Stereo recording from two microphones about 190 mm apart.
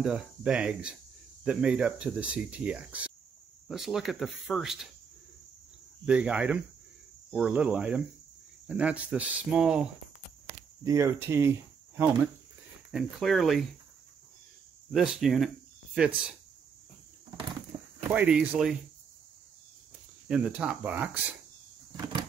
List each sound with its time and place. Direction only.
0.0 s speech: 5° right (ahead or behind)
6.0 s speech: 5° right (ahead or behind)
10.8 s speech: 15° right (ahead or behind)
12.9 s speech: centre (ahead or behind)
14.9 s speech: centre (ahead or behind)
18.1 s speech: 5° right (ahead or behind)
20.2 s speech: 5° right (ahead or behind)
21.9 s vehicle: 20° right (ahead or behind)